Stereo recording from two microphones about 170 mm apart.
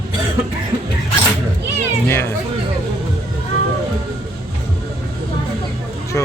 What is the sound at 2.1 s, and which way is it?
Speech, 15° left (ahead or behind).